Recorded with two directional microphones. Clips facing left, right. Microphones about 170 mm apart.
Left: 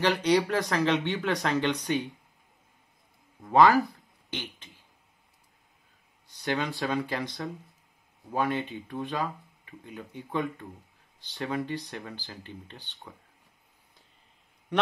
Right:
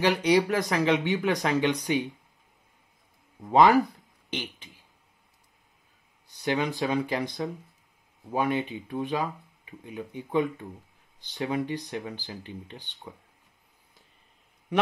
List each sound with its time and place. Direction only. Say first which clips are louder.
0.0 s speech: right 2 dB; 10° right (ahead or behind)
3.5 s speech: right 1 dB; 20° right (ahead or behind)
6.4 s speech: right 3 dB; 15° right (ahead or behind)